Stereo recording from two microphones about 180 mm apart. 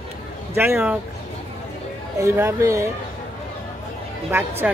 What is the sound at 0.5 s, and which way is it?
Speech, 15° right (ahead or behind).